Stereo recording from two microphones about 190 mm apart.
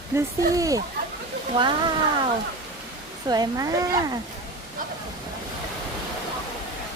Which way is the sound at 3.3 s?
20° right (ahead or behind).